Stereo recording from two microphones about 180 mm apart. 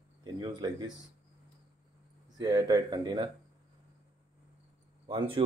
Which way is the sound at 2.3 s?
20° right (ahead or behind).